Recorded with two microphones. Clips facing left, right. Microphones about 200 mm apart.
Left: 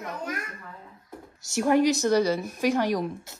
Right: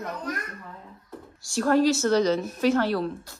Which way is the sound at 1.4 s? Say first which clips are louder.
Even; 20° left (ahead or behind).